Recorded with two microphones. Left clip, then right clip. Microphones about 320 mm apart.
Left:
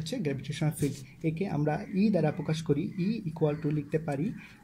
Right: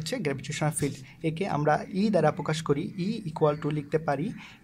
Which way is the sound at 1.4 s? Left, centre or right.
Right.